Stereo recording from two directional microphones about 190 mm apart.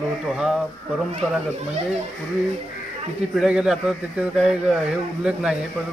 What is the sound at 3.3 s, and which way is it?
Speech, 5° right (ahead or behind).